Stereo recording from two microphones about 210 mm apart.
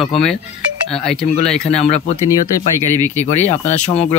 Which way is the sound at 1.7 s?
30° left (ahead or behind).